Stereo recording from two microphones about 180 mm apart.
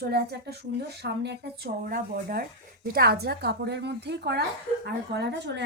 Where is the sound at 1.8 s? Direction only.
55° right (ahead or behind).